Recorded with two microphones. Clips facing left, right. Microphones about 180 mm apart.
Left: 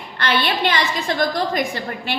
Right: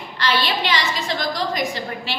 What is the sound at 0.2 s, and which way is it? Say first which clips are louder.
A woman's voice: left 2 dB; 55° left (ahead or behind).